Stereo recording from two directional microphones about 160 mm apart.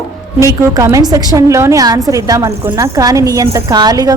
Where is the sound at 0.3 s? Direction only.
20° right (ahead or behind).